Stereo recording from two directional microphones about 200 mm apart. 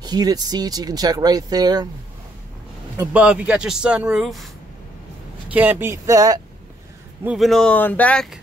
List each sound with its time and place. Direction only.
0.0 s speech: 20° right (ahead or behind)
3.0 s speech: 5° right (ahead or behind)
5.5 s speech: 10° right (ahead or behind)
7.2 s speech: centre (ahead or behind)